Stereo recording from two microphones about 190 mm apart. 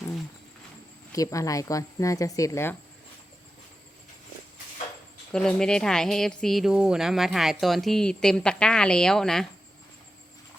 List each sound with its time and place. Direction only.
1.1 s speech: 15° left (ahead or behind)
5.3 s speech: 5° left (ahead or behind)